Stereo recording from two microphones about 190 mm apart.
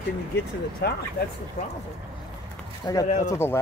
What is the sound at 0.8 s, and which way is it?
Speech, 60° left (ahead or behind).